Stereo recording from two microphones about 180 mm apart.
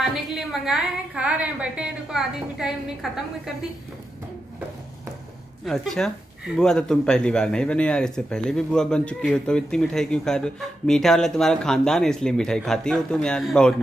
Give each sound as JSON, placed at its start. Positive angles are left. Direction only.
{"t": 0.0, "sound": "speech", "side_deg": 0}
{"t": 5.7, "sound": "speech", "side_deg": 0}